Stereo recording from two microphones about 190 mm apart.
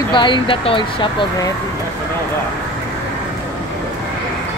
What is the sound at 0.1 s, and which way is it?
Speech, 25° left (ahead or behind).